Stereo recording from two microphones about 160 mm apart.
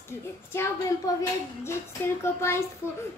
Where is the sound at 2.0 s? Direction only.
15° left (ahead or behind).